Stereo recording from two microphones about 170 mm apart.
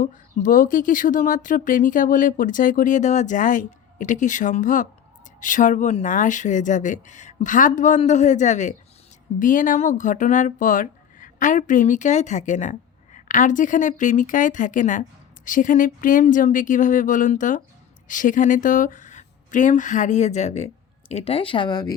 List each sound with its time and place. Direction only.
0.0 s speech: 50° left (ahead or behind); by 21.9 s 25° left (ahead or behind)